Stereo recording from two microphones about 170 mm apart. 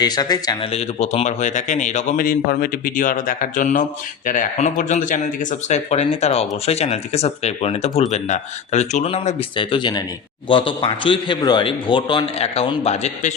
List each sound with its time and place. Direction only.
0.0 s a man's voice: 25° left (ahead or behind)
0.7 s a man's voice: 40° left (ahead or behind)